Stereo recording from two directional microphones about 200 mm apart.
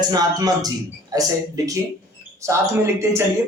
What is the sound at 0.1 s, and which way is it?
Speech, 20° right (ahead or behind).